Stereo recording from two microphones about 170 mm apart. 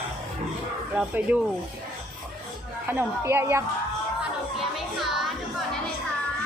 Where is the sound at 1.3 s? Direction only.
5° right (ahead or behind).